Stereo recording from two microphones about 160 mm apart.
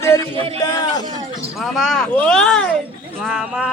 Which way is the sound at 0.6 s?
25° left (ahead or behind).